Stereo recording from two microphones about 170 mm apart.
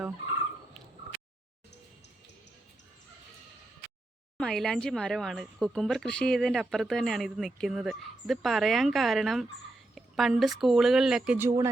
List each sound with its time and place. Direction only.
4.4 s speech: 5° left (ahead or behind); by 11.7 s 15° right (ahead or behind)